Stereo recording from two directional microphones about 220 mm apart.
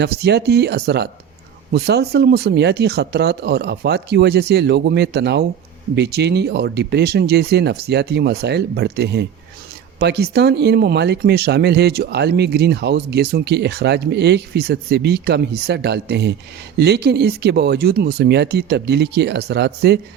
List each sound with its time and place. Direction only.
0.0 s speech: 50° right (ahead or behind)